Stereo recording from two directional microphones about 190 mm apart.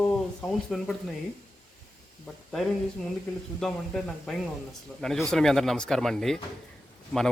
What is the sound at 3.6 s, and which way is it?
Speech, centre (ahead or behind).